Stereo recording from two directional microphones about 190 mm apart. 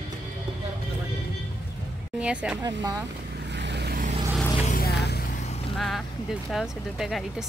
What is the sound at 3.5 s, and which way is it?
Vehicle, 65° right (ahead or behind).